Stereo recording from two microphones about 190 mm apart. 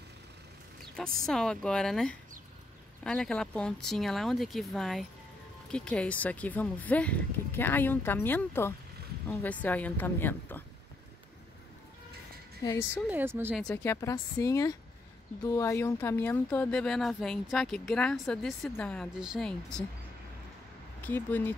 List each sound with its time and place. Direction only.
1.2 s speech: 5° left (ahead or behind)
12.6 s speech: 10° left (ahead or behind)
13.1 s speech: 10° right (ahead or behind)
13.6 s speech: 5° left (ahead or behind)
14.0 s speech: 15° left (ahead or behind); by 19.8 s centre (ahead or behind)
21.0 s speech: 10° left (ahead or behind)